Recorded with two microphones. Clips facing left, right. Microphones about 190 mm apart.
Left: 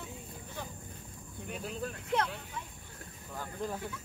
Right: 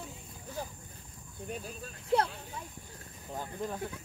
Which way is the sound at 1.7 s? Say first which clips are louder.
Left 6 dB; 70° left (ahead or behind).